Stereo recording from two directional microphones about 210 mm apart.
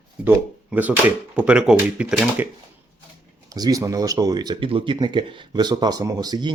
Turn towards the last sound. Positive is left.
turn(degrees=-20)  # may be behind; listen again after turning